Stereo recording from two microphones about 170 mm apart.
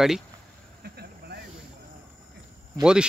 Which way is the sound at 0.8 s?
70° right (ahead or behind).